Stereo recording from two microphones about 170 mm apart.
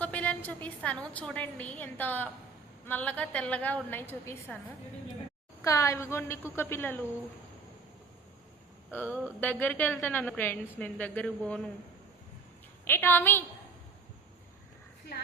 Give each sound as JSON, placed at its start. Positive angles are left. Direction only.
{"t": 0.0, "sound": "a woman's voice", "side_deg": 10}
{"t": 5.6, "sound": "a woman's voice", "side_deg": 20}
{"t": 8.9, "sound": "a woman's voice", "side_deg": 10}
{"t": 12.8, "sound": "a woman's voice", "side_deg": 10}